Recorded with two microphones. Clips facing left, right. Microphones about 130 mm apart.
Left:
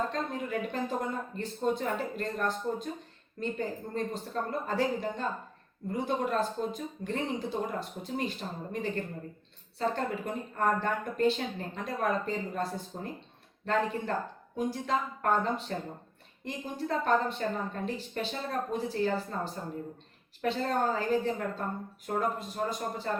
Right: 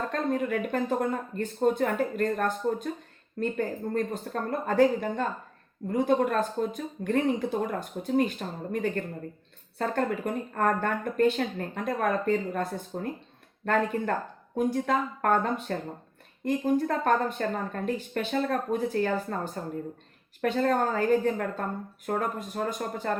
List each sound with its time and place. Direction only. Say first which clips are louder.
0.1 s speech: right 6 dB; 55° right (ahead or behind)